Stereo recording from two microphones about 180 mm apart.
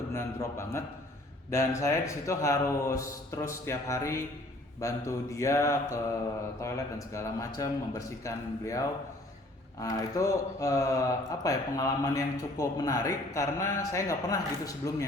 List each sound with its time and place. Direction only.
0.1 s speech: 15° left (ahead or behind)
9.8 s speech: 20° left (ahead or behind)